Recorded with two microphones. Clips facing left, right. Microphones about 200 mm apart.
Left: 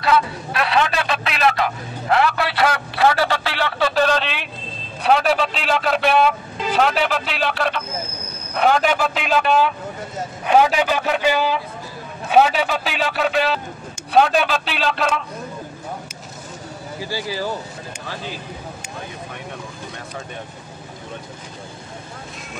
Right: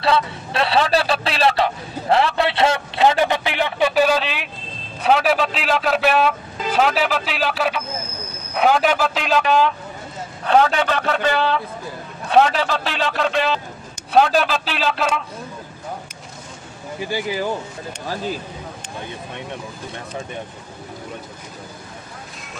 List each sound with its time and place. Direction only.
0.0 s a man's voice: 30° right (ahead or behind); by 15.2 s centre (ahead or behind)
17.0 s speech: 20° right (ahead or behind)